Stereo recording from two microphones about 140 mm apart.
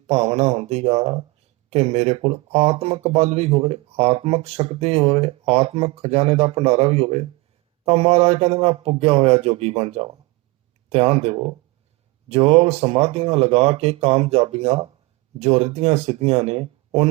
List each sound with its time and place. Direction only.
0.1 s speech: 50° right (ahead or behind)